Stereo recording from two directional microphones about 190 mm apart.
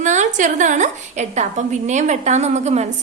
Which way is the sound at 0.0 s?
40° right (ahead or behind).